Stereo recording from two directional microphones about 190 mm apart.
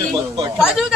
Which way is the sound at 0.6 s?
5° right (ahead or behind).